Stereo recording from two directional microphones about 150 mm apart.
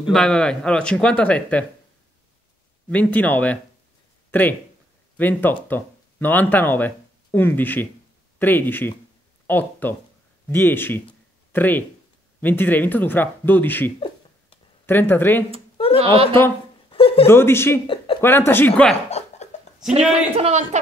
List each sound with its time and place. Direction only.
0.0 s speech: 5° left (ahead or behind)
2.9 s speech: 10° left (ahead or behind)
13.9 s a sound: 35° left (ahead or behind)
14.9 s speech: 15° left (ahead or behind)
16.0 s speech: 40° right (ahead or behind)
16.9 s a sound: 40° left (ahead or behind)
17.3 s speech: 15° left (ahead or behind)
17.8 s speech: 35° left (ahead or behind)
18.2 s speech: 15° left (ahead or behind)
19.0 s a sound: 45° left (ahead or behind)
20.1 s a man's voice: 45° right (ahead or behind)